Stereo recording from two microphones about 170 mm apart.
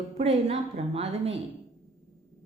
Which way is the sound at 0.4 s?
35° right (ahead or behind).